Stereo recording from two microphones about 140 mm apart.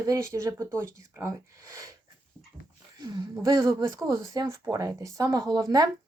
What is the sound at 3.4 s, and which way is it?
Speech, 25° right (ahead or behind).